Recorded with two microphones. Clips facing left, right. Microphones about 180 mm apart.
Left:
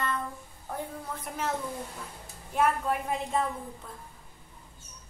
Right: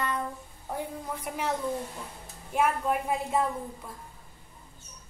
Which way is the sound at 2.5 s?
10° right (ahead or behind).